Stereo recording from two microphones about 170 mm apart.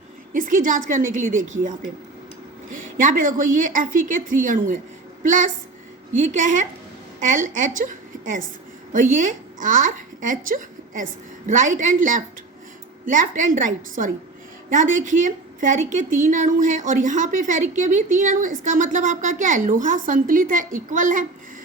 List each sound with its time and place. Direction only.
0.3 s a woman's voice: 50° right (ahead or behind)